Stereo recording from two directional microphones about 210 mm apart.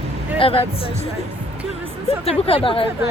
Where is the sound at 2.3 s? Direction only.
25° left (ahead or behind).